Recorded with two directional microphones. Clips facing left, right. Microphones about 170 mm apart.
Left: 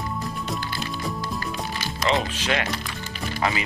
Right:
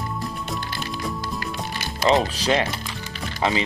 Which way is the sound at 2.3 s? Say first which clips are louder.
Right 4 dB; 35° right (ahead or behind).